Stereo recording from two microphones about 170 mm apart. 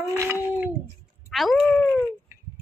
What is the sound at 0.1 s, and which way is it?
Dog, 15° right (ahead or behind).